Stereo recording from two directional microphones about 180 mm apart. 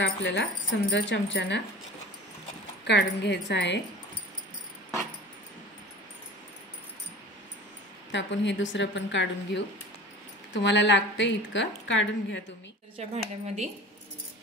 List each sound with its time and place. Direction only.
0.0 s a woman's voice: 85° left
2.8 s a woman's voice: 70° left (ahead or behind)
8.1 s a woman's voice: 80° left
12.9 s speech: 40° right (ahead or behind)